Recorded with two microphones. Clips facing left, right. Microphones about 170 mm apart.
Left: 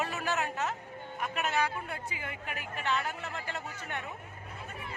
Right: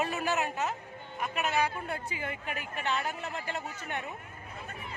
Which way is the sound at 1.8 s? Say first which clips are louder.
Right 4 dB; 30° right (ahead or behind).